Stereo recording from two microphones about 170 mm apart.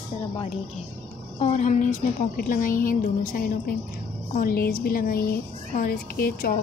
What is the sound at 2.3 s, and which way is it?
Speech, 60° left (ahead or behind).